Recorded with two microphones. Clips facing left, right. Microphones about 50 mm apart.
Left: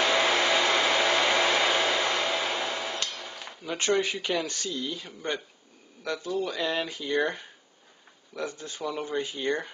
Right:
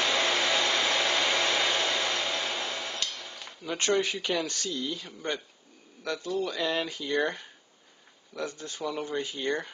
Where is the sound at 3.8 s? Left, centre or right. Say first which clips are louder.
Left 1 dB; left.